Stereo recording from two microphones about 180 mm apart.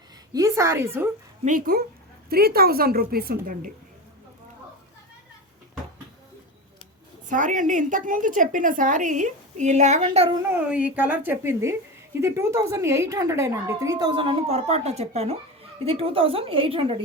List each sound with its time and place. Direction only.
0.3 s a woman's voice: 15° right (ahead or behind)
1.5 s a woman's voice: 50° right (ahead or behind)
7.3 s a woman's voice: 45° right (ahead or behind)
10.5 s a woman's voice: 5° right (ahead or behind); by 17.0 s 30° right (ahead or behind)